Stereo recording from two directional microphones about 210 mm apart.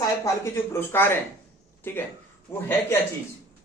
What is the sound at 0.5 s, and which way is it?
Speech, 10° left (ahead or behind).